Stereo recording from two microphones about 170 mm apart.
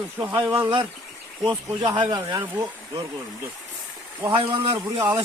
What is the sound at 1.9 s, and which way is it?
Speech, 25° right (ahead or behind).